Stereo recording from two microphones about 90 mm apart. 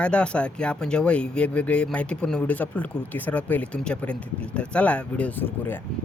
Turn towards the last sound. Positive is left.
turn(degrees=20)  # may be behind; listen again after turning